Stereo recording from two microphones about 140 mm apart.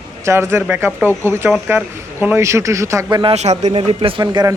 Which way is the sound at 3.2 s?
50° right (ahead or behind).